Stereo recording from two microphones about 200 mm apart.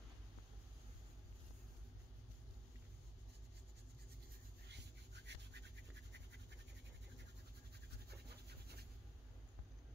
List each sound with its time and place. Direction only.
4.6 s rub: 60° right (ahead or behind)
8.5 s writing: 55° right (ahead or behind)